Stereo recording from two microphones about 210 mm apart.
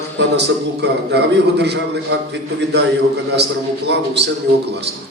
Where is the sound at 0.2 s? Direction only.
55° right (ahead or behind).